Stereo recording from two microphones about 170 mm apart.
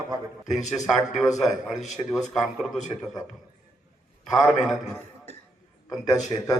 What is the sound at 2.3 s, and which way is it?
Speech, centre (ahead or behind).